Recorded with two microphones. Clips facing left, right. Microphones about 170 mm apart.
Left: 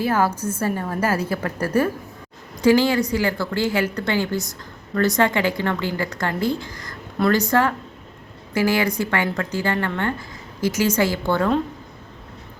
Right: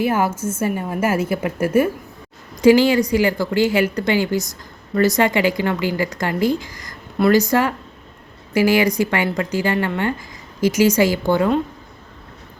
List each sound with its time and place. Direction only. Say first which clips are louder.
0.0 s a woman's voice: right 2 dB; 25° right (ahead or behind)
1.4 s speech: right 4 dB; 10° right (ahead or behind)
1.6 s a woman's voice: right 4 dB; 20° right (ahead or behind)
8.5 s speech: right 4 dB; 15° right (ahead or behind)